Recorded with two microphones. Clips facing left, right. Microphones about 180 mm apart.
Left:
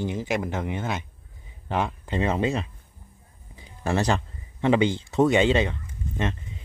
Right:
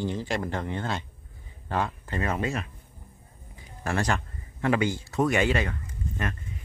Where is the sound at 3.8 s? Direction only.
25° left (ahead or behind).